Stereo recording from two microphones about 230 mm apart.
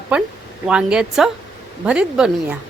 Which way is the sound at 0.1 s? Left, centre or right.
Centre.